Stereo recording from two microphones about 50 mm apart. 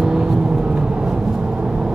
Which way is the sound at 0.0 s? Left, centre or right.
Centre.